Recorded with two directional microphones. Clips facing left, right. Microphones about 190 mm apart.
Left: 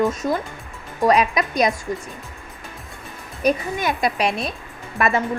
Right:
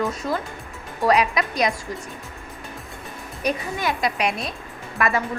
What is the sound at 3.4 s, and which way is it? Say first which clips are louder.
A woman's voice: left 4 dB; 20° left (ahead or behind).